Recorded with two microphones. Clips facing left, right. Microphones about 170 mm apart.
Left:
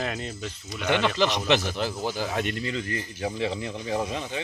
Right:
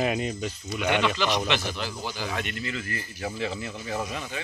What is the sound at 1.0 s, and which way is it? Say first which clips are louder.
Speech: left 2 dB; 35° left (ahead or behind).